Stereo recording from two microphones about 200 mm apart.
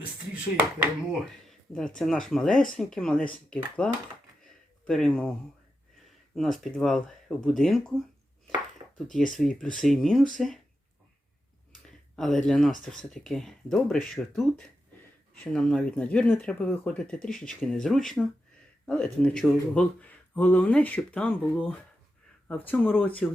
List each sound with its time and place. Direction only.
1.2 s speech: centre (ahead or behind)
6.3 s speech: centre (ahead or behind)
8.8 s a sound: 25° right (ahead or behind)
9.1 s speech: centre (ahead or behind)
11.9 s speech: centre (ahead or behind)